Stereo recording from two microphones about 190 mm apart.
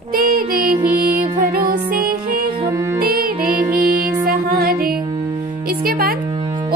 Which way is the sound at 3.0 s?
50° right (ahead or behind).